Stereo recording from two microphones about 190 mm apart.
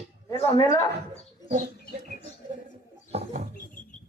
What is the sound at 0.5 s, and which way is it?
Speech, 20° left (ahead or behind).